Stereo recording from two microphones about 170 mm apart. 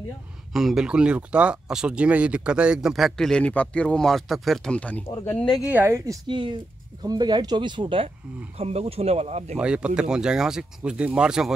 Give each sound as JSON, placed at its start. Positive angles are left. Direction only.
{"t": 0.5, "sound": "speech", "side_deg": 0}
{"t": 5.7, "sound": "speech", "side_deg": -10}
{"t": 6.2, "sound": "speech", "side_deg": -30}
{"t": 9.6, "sound": "speech", "side_deg": -5}